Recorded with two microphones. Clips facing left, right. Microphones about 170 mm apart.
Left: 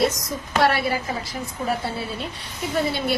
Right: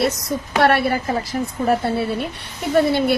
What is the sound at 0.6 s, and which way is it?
A woman's voice, 60° right (ahead or behind).